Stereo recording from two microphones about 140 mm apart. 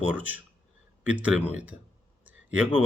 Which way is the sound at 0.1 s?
10° right (ahead or behind).